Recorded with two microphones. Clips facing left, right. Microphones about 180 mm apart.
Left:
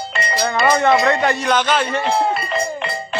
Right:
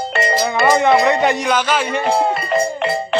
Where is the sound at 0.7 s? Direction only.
15° right (ahead or behind).